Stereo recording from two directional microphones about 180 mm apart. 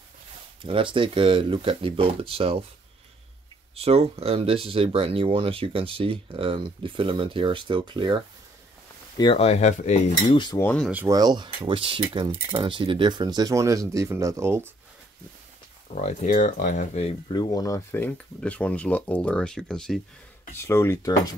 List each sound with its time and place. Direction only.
0.6 s speech: 30° right (ahead or behind)
3.7 s speech: 35° right (ahead or behind)
9.2 s speech: 30° left (ahead or behind)
10.6 s speech: 10° left (ahead or behind)
10.9 s speech: 10° right (ahead or behind)
11.1 s speech: 25° right (ahead or behind)
15.9 s speech: 40° left (ahead or behind)
17.3 s speech: 20° left (ahead or behind); by 20.0 s 5° left (ahead or behind)
20.5 s speech: 15° left (ahead or behind)